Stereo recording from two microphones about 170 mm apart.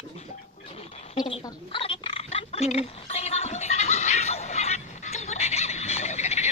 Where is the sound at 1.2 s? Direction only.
25° left (ahead or behind).